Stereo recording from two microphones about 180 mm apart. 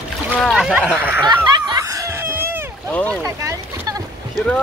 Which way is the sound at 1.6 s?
20° right (ahead or behind).